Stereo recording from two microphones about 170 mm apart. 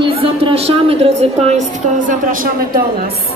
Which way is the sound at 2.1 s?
55° right (ahead or behind).